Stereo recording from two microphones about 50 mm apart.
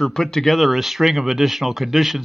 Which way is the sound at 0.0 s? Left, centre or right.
Centre.